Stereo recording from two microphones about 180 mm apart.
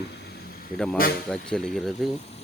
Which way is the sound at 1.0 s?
55° left (ahead or behind).